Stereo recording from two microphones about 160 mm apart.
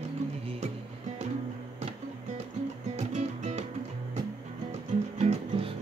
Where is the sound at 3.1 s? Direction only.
45° right (ahead or behind).